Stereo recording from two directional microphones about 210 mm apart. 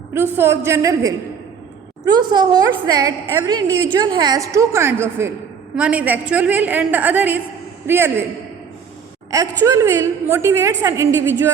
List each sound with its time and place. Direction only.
0.1 s a woman's voice: 10° right (ahead or behind)
9.3 s a woman's voice: 15° right (ahead or behind)